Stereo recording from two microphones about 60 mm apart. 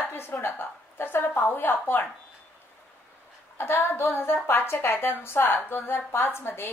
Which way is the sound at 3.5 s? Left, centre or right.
Left.